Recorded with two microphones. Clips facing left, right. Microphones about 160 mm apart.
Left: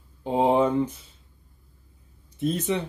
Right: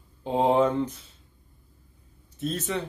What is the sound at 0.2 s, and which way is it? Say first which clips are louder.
Speech: left 1 dB; 10° left (ahead or behind).